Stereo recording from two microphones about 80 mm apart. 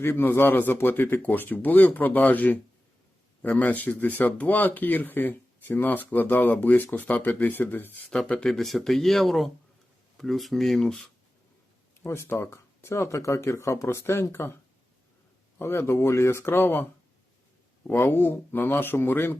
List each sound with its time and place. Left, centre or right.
0.0 s speech: left
8.4 s speech: centre
12.0 s speech: left
17.9 s speech: left